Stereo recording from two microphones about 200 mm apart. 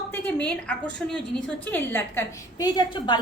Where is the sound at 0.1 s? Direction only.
5° left (ahead or behind).